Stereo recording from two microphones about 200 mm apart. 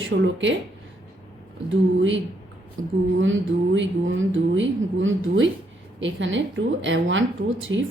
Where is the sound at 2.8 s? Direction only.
75° right (ahead or behind).